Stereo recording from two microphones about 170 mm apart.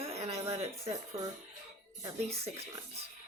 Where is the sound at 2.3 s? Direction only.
35° right (ahead or behind).